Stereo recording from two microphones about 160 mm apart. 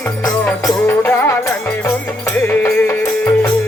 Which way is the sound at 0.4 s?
15° left (ahead or behind).